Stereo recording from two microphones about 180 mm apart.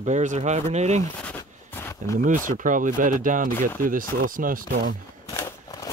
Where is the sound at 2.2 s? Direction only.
45° right (ahead or behind).